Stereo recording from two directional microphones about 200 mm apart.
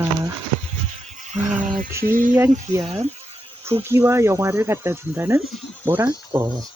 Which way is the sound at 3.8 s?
10° right (ahead or behind).